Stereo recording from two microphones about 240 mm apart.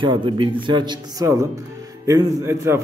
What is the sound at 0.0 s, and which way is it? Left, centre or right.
A man's voice, right.